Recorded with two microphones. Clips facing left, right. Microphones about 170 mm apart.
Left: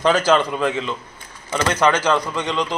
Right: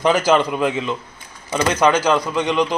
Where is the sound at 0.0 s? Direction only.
15° right (ahead or behind).